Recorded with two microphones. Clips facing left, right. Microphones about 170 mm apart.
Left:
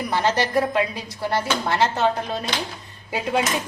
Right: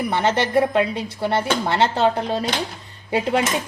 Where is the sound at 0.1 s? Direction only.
25° right (ahead or behind).